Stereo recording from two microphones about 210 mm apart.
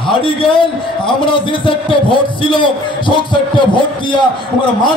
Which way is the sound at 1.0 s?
25° left (ahead or behind).